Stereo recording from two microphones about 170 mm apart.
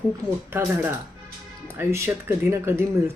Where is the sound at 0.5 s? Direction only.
15° right (ahead or behind).